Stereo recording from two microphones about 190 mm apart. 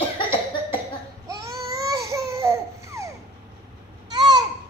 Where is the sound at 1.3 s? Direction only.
15° right (ahead or behind).